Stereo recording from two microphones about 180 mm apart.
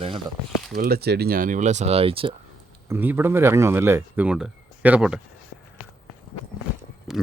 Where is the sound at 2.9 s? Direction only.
10° right (ahead or behind).